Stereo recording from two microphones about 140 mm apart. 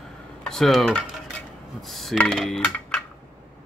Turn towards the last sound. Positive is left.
turn(degrees=5)  # may be behind; listen again after turning